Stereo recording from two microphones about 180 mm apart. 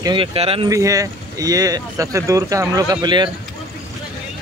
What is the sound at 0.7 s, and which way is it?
Speech, 20° right (ahead or behind).